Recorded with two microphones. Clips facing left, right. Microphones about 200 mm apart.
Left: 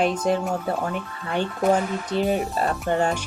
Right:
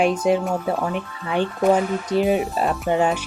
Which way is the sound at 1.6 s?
Centre (ahead or behind).